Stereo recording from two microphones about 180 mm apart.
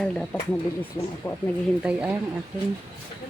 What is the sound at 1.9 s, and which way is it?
Speech, 5° right (ahead or behind).